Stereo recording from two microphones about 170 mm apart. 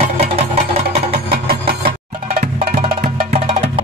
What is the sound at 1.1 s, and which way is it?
Engine, 65° right (ahead or behind).